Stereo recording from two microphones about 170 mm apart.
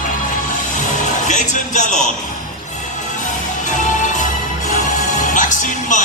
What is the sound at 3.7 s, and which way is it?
Music, 45° left (ahead or behind).